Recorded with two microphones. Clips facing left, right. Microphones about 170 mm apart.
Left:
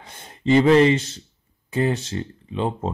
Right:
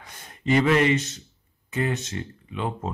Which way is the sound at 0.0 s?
30° left (ahead or behind).